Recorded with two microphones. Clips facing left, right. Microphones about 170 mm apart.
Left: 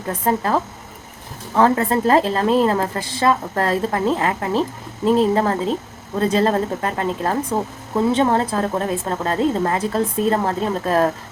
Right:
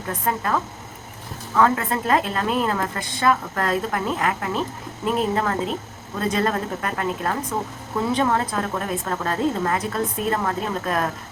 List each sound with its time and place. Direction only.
0.1 s a woman's voice: 30° left (ahead or behind)